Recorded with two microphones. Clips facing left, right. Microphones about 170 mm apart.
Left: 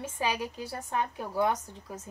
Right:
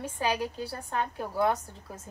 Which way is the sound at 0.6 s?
15° left (ahead or behind).